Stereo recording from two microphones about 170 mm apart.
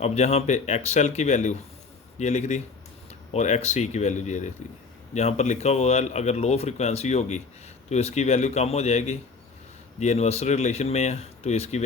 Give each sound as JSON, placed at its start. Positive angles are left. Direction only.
{"t": 0.0, "sound": "a man's voice", "side_deg": 40}